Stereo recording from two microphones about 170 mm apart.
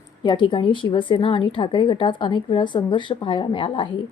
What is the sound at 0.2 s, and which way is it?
A woman's voice, 30° left (ahead or behind).